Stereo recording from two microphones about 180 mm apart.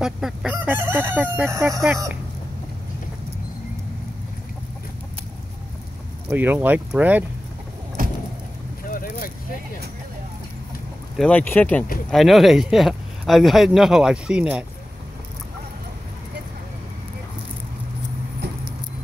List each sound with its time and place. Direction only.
0.0 s speech: 5° right (ahead or behind)
6.3 s speech: 10° right (ahead or behind)
8.0 s vehicle: 50° right (ahead or behind)
8.8 s vehicle: 50° left (ahead or behind)
11.1 s speech: 5° left (ahead or behind)